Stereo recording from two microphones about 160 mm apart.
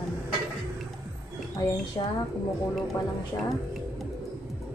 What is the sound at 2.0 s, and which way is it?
Speech, 25° left (ahead or behind).